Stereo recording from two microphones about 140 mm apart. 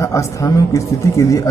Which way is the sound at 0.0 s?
20° left (ahead or behind).